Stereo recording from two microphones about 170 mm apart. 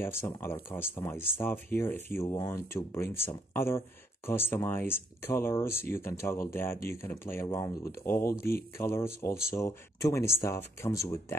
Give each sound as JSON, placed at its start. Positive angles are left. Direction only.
{"t": 0.0, "sound": "speech", "side_deg": 15}